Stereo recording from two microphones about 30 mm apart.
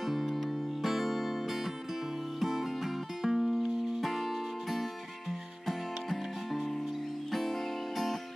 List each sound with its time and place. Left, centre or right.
0.0 s music: centre
3.2 s music: centre
5.7 s music: centre